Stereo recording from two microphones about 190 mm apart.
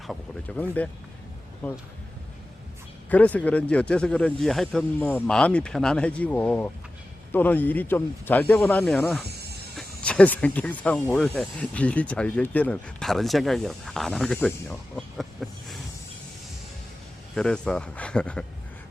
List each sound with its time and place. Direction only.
0.1 s speech: 5° left (ahead or behind)
3.1 s speech: 10° left (ahead or behind)
9.2 s a sound: 60° right (ahead or behind)
9.7 s speech: 5° left (ahead or behind)
17.3 s speech: 5° left (ahead or behind)